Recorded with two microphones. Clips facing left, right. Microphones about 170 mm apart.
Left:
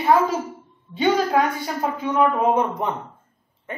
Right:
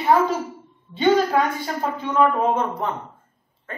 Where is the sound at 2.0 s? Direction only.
10° left (ahead or behind).